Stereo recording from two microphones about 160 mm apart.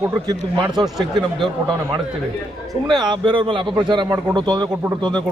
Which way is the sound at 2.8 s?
30° right (ahead or behind).